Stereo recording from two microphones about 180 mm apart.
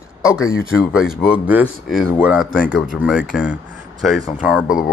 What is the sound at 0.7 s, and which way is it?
Speech, 5° right (ahead or behind).